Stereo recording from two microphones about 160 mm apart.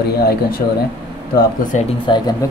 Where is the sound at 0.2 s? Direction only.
75° left (ahead or behind).